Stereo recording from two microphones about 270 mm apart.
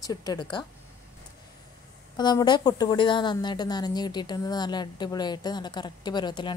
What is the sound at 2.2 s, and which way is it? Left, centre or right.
Speech, centre.